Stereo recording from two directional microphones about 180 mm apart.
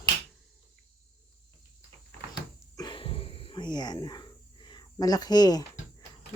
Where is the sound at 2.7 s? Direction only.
25° left (ahead or behind).